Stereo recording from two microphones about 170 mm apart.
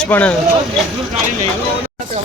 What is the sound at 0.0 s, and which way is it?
Speech, 10° left (ahead or behind).